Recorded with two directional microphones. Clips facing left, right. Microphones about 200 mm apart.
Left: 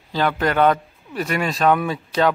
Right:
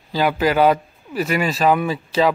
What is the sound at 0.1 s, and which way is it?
A man's voice, 5° right (ahead or behind).